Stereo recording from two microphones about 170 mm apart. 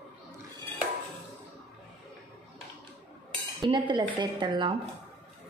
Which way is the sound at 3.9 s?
25° right (ahead or behind).